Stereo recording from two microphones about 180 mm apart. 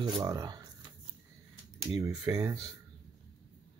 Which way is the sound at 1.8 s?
15° right (ahead or behind).